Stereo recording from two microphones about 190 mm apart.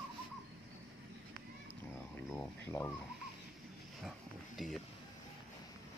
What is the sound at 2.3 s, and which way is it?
Speech, 5° left (ahead or behind).